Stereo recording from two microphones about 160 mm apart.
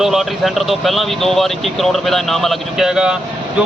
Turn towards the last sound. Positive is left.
turn(degrees=-5)  # may be behind; listen again after turning